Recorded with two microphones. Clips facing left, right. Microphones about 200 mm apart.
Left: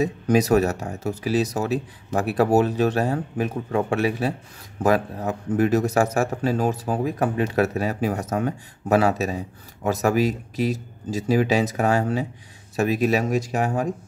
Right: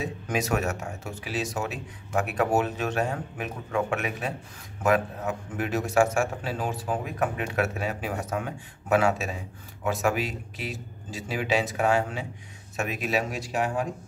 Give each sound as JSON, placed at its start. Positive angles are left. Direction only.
{"t": 0.0, "sound": "speech", "side_deg": 40}